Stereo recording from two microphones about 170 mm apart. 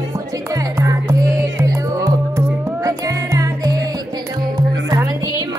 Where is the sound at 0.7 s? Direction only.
20° right (ahead or behind).